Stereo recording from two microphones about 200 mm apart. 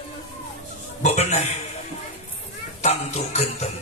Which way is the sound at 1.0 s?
35° left (ahead or behind).